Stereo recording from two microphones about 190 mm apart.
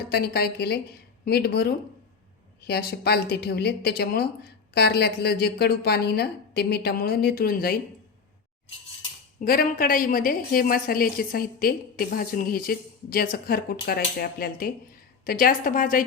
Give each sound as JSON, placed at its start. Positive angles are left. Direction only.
{"t": 0.1, "sound": "a woman's voice", "side_deg": 55}
{"t": 9.4, "sound": "a woman's voice", "side_deg": 50}